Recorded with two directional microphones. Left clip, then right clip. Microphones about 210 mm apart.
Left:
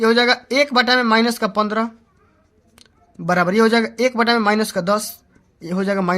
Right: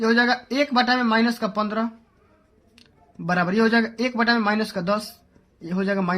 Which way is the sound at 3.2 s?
35° left (ahead or behind).